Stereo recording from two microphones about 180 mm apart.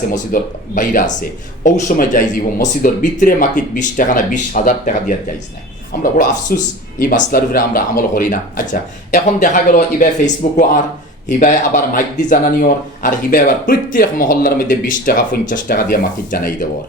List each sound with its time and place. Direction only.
0.3 s speech: 50° left (ahead or behind)
6.5 s speech: 55° left (ahead or behind)